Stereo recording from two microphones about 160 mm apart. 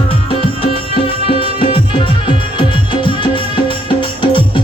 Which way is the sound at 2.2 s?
30° left (ahead or behind).